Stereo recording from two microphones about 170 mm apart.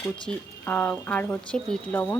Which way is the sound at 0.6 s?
10° left (ahead or behind).